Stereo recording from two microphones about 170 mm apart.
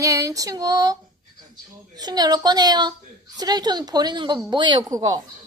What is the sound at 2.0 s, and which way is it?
Speech, 25° right (ahead or behind).